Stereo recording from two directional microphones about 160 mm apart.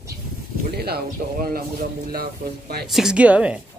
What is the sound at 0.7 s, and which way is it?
Speech, 80° right.